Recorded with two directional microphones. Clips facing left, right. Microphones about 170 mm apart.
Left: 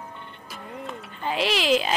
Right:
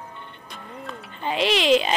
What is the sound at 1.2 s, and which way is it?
Speech, 5° left (ahead or behind).